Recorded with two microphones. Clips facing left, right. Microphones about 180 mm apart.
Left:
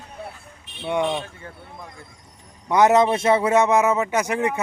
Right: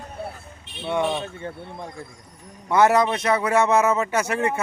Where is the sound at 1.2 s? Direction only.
25° right (ahead or behind).